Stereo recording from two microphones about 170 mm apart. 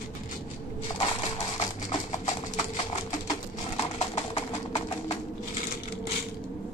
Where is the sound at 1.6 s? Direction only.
35° left (ahead or behind).